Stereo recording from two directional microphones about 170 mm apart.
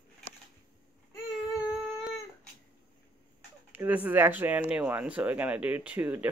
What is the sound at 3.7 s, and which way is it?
Speech, 10° right (ahead or behind).